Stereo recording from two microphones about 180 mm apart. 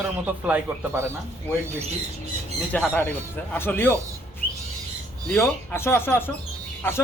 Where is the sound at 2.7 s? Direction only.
10° left (ahead or behind).